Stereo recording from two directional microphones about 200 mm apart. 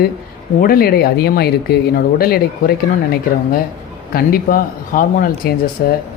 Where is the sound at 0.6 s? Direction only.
50° left (ahead or behind).